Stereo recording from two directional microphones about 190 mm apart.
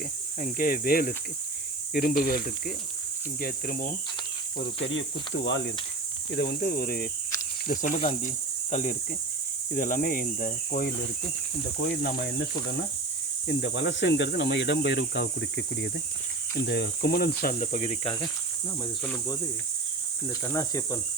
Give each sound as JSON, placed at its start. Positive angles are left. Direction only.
{"t": 0.3, "sound": "cricket", "side_deg": 45}
{"t": 4.9, "sound": "speech", "side_deg": 75}
{"t": 6.3, "sound": "cricket", "side_deg": 55}
{"t": 7.9, "sound": "cricket", "side_deg": 35}
{"t": 11.8, "sound": "cricket", "side_deg": 60}
{"t": 13.5, "sound": "cricket", "side_deg": 60}
{"t": 19.0, "sound": "cricket", "side_deg": 15}